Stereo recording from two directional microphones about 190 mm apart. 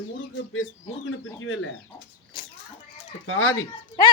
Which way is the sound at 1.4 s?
90° left.